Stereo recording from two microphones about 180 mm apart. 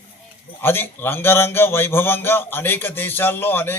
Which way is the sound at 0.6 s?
10° left (ahead or behind).